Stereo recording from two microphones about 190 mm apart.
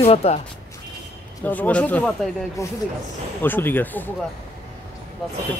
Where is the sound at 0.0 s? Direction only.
35° left (ahead or behind).